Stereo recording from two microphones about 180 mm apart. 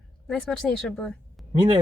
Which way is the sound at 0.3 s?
5° left (ahead or behind).